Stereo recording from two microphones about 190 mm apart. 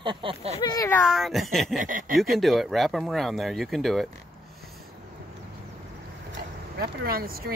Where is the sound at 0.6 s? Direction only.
20° left (ahead or behind).